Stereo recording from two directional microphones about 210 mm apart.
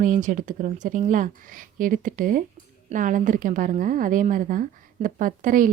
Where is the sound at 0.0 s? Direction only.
40° right (ahead or behind).